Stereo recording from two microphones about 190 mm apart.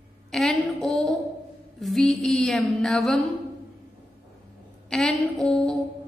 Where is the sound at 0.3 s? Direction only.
Centre (ahead or behind).